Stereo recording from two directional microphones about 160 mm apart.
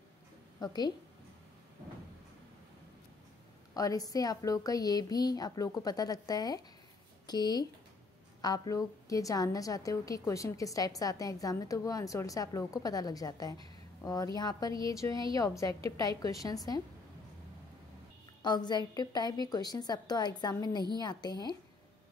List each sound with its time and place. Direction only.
0.6 s a woman's voice: 25° left (ahead or behind)
3.7 s a woman's voice: 20° left (ahead or behind)
18.4 s a woman's voice: 25° left (ahead or behind)